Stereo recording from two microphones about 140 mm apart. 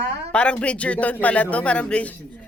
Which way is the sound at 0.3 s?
10° left (ahead or behind).